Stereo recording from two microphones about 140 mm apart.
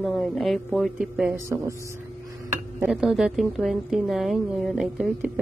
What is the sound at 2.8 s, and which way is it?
A woman's voice, 5° right (ahead or behind).